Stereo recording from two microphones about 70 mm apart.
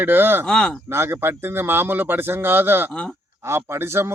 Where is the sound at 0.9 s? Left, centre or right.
Right.